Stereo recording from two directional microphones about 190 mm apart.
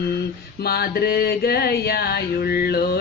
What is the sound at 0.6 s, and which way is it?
Female singing, 55° left (ahead or behind).